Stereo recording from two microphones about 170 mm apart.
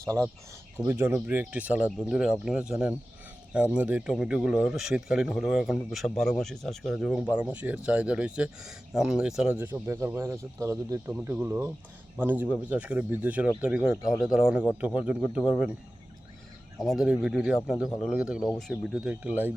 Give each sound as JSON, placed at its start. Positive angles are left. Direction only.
{"t": 0.0, "sound": "speech", "side_deg": -20}
{"t": 16.8, "sound": "speech", "side_deg": 0}